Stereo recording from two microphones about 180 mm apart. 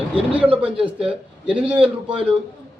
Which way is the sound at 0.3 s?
5° right (ahead or behind).